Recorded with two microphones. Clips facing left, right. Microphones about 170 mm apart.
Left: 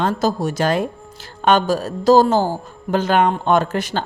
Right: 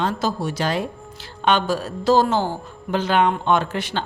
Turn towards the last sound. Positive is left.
turn(degrees=45)  # may be behind; listen again after turning